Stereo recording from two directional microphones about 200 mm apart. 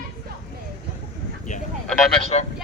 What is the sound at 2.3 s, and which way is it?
Speech, 30° left (ahead or behind).